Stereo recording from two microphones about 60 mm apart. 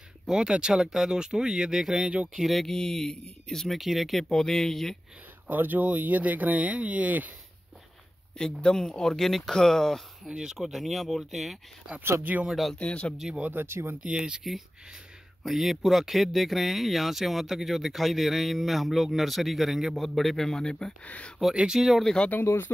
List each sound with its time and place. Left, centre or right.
0.3 s speech: centre
5.5 s speech: right
8.4 s speech: centre
10.3 s speech: centre
12.2 s speech: right
12.4 s speech: centre
12.7 s speech: centre
13.5 s speech: right
14.0 s speech: centre
15.4 s speech: centre
21.0 s speech: left
21.5 s speech: centre
22.0 s speech: centre
22.4 s speech: left